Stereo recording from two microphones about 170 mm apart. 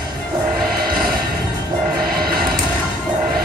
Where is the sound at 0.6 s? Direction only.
60° right (ahead or behind).